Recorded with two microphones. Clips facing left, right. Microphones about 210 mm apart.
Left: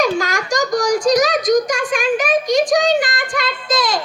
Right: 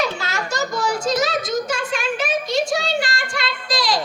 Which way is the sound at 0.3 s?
15° left (ahead or behind).